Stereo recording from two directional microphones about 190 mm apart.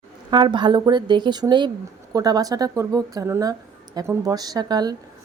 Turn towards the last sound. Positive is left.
turn(degrees=-20)  # may be behind; listen again after turning